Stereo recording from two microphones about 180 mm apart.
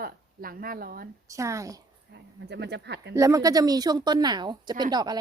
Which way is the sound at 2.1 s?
65° right (ahead or behind).